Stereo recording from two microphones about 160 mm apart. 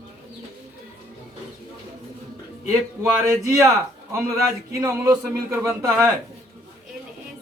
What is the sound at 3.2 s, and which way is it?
A man's voice, 20° right (ahead or behind).